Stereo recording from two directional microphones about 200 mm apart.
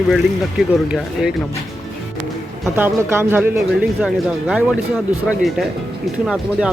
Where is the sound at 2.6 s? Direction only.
10° right (ahead or behind).